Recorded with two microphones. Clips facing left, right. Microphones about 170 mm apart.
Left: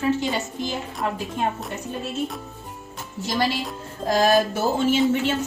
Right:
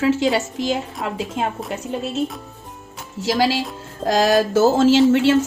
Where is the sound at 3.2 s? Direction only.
90° right.